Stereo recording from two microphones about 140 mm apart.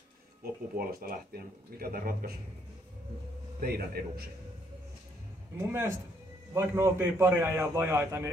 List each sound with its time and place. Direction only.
0.4 s speech: 90° right
3.6 s speech: 90° right
5.7 s a man's voice: 20° right (ahead or behind)